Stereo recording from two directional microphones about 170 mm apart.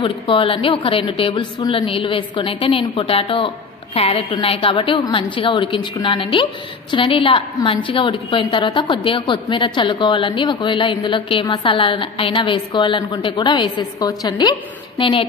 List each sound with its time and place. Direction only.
0.0 s a woman's voice: 30° left (ahead or behind)